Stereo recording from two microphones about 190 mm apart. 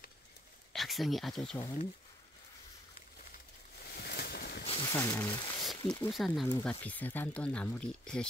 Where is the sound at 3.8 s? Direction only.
55° left (ahead or behind).